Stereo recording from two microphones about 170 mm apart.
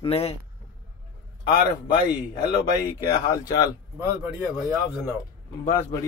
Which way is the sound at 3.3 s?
20° left (ahead or behind).